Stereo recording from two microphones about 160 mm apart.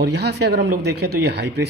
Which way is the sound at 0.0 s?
90° right.